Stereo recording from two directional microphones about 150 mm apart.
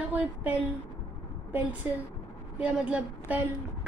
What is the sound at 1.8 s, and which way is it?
A woman's voice, 10° right (ahead or behind).